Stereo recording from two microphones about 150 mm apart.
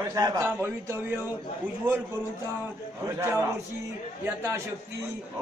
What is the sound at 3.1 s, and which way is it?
Speech, 15° right (ahead or behind).